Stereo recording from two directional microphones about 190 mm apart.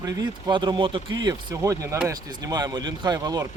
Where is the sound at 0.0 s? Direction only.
20° right (ahead or behind).